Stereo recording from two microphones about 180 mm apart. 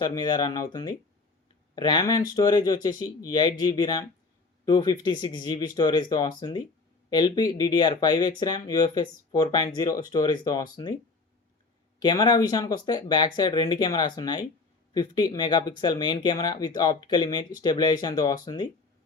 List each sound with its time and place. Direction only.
0.0 s speech: 20° left (ahead or behind)
11.9 s speech: 25° left (ahead or behind)